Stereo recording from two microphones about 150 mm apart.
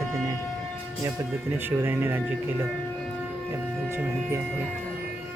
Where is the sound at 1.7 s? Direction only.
15° right (ahead or behind).